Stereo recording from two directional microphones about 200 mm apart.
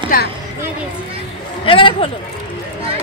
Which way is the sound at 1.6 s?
25° left (ahead or behind).